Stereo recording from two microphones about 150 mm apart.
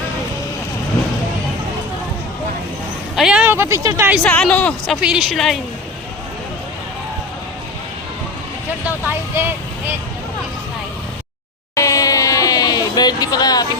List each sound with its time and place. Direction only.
3.2 s speech: 5° right (ahead or behind)
4.2 s a woman's voice: 5° left (ahead or behind)
5.0 s speech: 5° right (ahead or behind)
11.7 s a sound: 20° left (ahead or behind)